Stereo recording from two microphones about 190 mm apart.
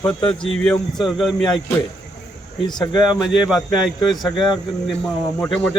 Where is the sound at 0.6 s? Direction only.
5° left (ahead or behind).